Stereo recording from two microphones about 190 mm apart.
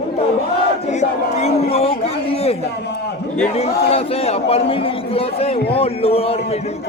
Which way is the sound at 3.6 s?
30° left (ahead or behind).